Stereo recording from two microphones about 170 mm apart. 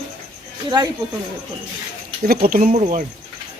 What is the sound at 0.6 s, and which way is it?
Speech, 25° right (ahead or behind).